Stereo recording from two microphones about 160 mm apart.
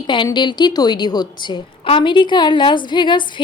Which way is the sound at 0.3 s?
30° left (ahead or behind).